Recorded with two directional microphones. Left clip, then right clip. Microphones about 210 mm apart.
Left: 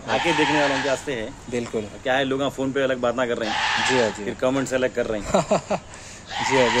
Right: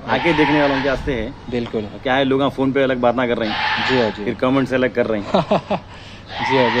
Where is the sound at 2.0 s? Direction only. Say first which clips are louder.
Right 5 dB; 40° right (ahead or behind).